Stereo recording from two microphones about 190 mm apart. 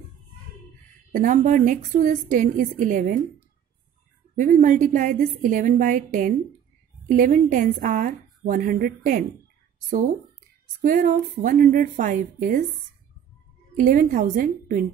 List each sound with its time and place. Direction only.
1.1 s a woman's voice: 45° right (ahead or behind)
10.8 s a woman's voice: 45° right (ahead or behind)
13.7 s a woman's voice: 45° right (ahead or behind)